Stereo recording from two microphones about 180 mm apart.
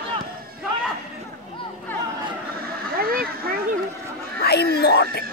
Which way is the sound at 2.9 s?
55° right (ahead or behind).